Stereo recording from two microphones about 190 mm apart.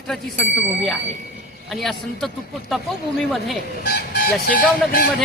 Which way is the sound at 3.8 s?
55° left (ahead or behind).